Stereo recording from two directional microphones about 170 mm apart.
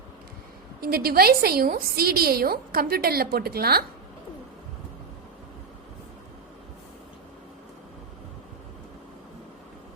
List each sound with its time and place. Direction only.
0.8 s a woman's voice: 60° right (ahead or behind)